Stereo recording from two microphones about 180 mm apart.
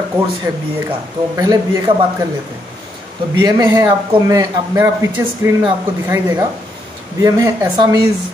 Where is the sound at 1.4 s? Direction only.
20° right (ahead or behind).